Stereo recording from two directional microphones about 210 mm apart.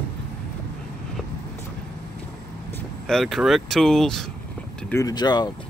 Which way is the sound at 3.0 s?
Centre (ahead or behind).